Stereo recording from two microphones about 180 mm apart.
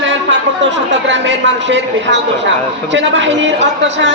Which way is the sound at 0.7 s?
75° right (ahead or behind).